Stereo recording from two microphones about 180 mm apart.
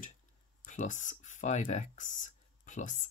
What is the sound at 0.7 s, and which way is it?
Speech, 45° left (ahead or behind).